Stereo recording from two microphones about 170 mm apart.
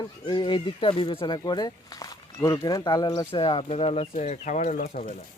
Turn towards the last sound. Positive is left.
turn(degrees=45)  # may be behind; listen again after turning